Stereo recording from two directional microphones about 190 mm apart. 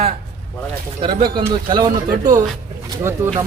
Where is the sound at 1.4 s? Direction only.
25° right (ahead or behind).